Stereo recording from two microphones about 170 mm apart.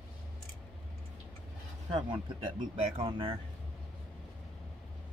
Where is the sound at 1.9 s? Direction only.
30° right (ahead or behind).